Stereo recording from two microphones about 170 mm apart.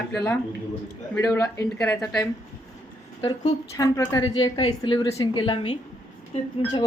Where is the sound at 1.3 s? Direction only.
10° left (ahead or behind).